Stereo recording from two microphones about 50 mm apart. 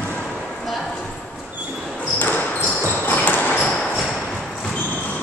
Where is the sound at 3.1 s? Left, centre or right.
Left.